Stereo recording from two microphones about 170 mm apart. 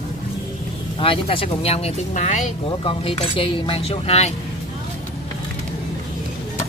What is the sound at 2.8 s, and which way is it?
Speech, 35° left (ahead or behind).